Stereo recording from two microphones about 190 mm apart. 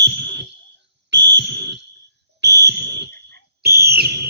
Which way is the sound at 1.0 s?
65° right (ahead or behind).